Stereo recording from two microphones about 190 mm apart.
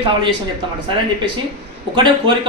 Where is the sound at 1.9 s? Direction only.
25° right (ahead or behind).